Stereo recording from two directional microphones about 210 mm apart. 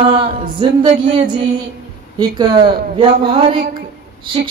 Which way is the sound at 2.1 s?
20° right (ahead or behind).